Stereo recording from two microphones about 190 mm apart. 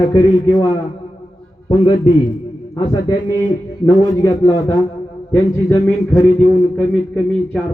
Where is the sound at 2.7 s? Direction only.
20° left (ahead or behind).